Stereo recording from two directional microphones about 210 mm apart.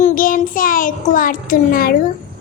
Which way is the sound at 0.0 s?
40° left (ahead or behind).